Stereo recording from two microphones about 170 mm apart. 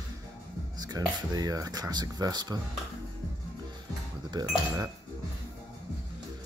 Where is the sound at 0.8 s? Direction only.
20° right (ahead or behind).